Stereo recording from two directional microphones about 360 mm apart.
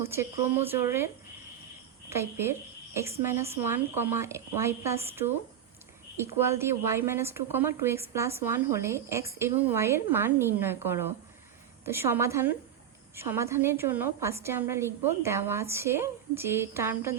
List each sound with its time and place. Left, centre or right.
0.0 s a woman's voice: centre